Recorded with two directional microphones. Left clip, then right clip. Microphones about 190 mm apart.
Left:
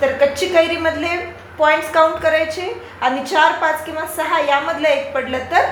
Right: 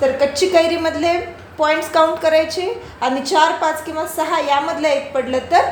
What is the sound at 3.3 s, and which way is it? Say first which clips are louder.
A woman's voice: even; 50° right (ahead or behind).